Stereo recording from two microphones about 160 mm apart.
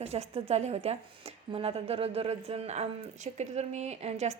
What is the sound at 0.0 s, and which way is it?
A woman's voice, 40° right (ahead or behind).